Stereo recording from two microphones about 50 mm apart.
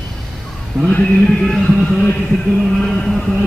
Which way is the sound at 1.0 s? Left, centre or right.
Centre.